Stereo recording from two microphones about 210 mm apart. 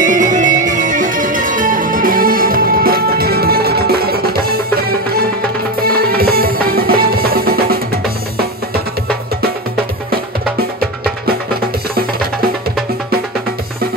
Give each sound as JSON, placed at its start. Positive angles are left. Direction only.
{"t": 0.0, "sound": "music", "side_deg": -40}